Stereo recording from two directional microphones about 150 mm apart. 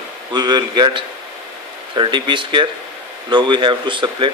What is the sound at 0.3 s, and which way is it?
Speech, 30° right (ahead or behind).